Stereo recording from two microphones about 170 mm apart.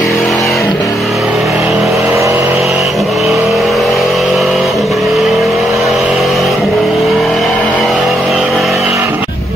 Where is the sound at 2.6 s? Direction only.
Centre (ahead or behind).